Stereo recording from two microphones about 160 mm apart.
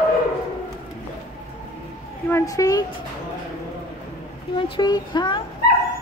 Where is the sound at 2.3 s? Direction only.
20° left (ahead or behind).